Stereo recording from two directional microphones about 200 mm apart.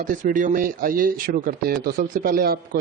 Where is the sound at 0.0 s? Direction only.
40° right (ahead or behind).